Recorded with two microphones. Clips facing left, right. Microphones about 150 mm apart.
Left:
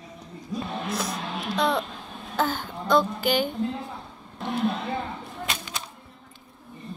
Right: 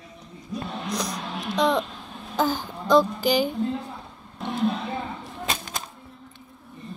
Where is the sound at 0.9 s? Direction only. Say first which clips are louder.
Even; 5° left (ahead or behind).